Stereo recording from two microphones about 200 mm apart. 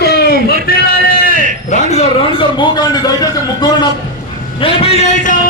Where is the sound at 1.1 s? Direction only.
45° left (ahead or behind).